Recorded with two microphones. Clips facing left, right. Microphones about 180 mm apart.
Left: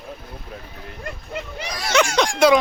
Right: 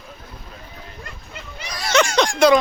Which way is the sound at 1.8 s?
5° left (ahead or behind).